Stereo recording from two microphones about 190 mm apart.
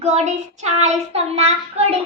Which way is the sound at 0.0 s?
35° right (ahead or behind).